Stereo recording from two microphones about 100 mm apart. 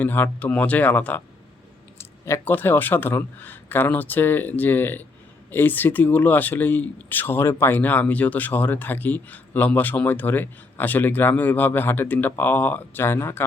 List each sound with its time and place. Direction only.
0.0 s speech: 20° left (ahead or behind)
2.2 s speech: 25° left (ahead or behind)